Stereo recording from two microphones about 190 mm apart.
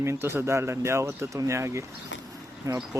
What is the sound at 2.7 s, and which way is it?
Speech, 20° right (ahead or behind).